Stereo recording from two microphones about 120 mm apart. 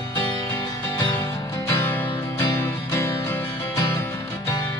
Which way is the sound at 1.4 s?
25° left (ahead or behind).